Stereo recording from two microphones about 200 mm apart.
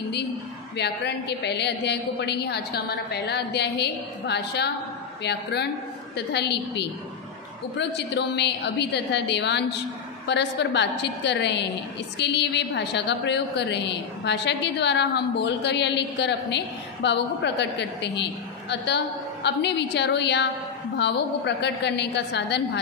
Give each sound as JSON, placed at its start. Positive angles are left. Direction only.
{"t": 0.7, "sound": "a woman's voice", "side_deg": 55}
{"t": 8.4, "sound": "a woman's voice", "side_deg": 60}